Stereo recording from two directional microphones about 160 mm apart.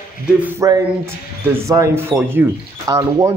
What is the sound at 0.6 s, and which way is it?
Speech, 20° right (ahead or behind).